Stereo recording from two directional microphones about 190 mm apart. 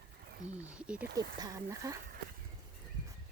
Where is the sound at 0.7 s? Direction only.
5° right (ahead or behind).